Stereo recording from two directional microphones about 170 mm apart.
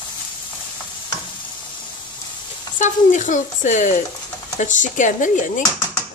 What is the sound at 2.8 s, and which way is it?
Speech, 45° left (ahead or behind).